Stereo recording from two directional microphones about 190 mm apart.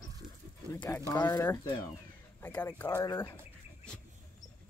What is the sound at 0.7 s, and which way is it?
Speech, 15° left (ahead or behind).